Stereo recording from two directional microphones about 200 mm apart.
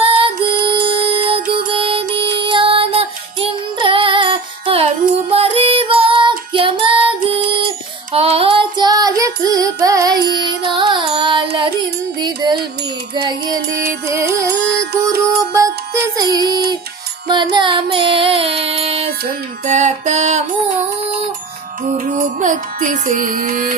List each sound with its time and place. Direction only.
0.0 s music: 25° right (ahead or behind)
5.3 s child singing: 30° right (ahead or behind)
10.2 s music: 20° right (ahead or behind)
15.5 s music: 15° right (ahead or behind); by 20.4 s 35° right (ahead or behind)
21.8 s music: 40° right (ahead or behind)